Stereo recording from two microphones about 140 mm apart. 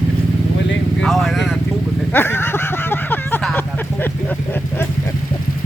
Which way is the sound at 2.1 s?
15° left (ahead or behind).